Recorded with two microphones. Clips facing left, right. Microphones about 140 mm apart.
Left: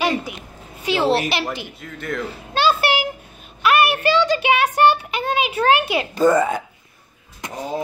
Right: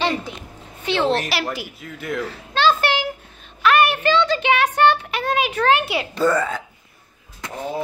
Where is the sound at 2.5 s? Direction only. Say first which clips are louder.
Even; 10° left (ahead or behind).